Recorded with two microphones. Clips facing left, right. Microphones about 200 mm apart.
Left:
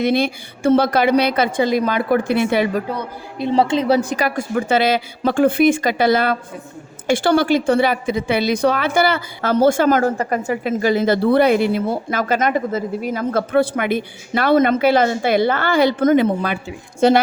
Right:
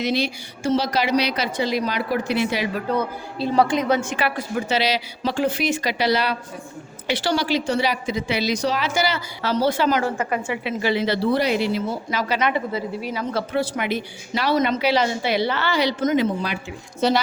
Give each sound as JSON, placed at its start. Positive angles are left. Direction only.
{"t": 0.0, "sound": "a woman's voice", "side_deg": 55}
{"t": 3.3, "sound": "a woman's voice", "side_deg": 25}